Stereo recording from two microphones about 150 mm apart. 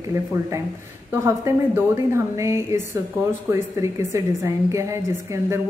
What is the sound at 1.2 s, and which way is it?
A woman's voice, 20° right (ahead or behind).